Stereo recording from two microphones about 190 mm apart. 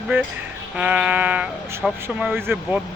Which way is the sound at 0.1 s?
10° right (ahead or behind).